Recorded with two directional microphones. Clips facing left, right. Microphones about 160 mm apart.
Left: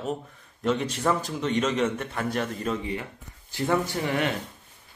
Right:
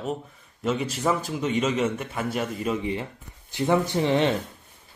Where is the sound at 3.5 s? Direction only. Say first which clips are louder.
Right 3 dB; 20° right (ahead or behind).